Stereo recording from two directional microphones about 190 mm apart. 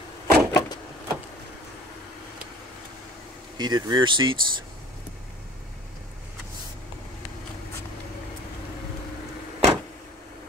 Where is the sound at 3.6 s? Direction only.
20° right (ahead or behind).